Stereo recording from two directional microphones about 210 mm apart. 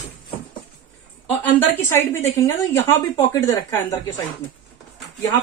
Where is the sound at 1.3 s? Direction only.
10° left (ahead or behind).